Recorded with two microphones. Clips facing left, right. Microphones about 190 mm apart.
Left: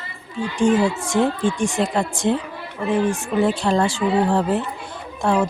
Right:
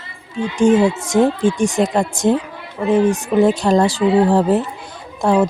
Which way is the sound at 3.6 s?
40° right (ahead or behind).